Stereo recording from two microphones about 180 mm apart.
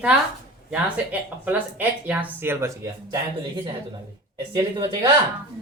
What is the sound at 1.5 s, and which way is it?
Speech, 10° right (ahead or behind).